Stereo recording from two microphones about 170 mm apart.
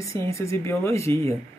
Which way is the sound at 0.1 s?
15° left (ahead or behind).